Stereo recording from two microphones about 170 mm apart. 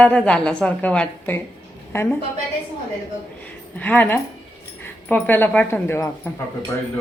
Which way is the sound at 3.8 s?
10° left (ahead or behind).